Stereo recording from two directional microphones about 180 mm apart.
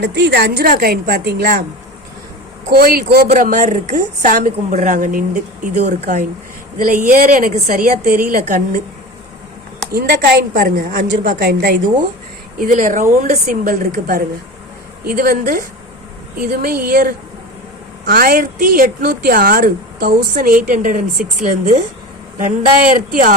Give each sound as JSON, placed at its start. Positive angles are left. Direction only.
{"t": 0.0, "sound": "a woman's voice", "side_deg": -70}
{"t": 2.6, "sound": "a woman's voice", "side_deg": -60}
{"t": 3.2, "sound": "a woman's voice", "side_deg": -45}
{"t": 9.9, "sound": "a woman's voice", "side_deg": -60}
{"t": 12.5, "sound": "a woman's voice", "side_deg": -45}